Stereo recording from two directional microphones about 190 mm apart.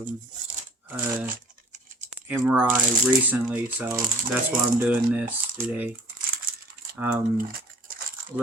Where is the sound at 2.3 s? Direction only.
5° right (ahead or behind).